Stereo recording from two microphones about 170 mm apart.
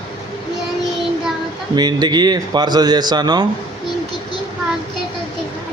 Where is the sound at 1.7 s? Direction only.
25° right (ahead or behind).